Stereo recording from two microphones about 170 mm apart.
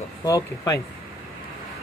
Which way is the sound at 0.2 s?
20° left (ahead or behind).